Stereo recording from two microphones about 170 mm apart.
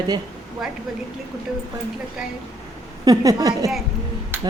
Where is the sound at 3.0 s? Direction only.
20° right (ahead or behind).